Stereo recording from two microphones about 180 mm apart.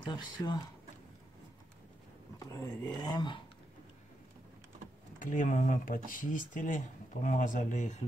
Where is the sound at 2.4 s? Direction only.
20° left (ahead or behind).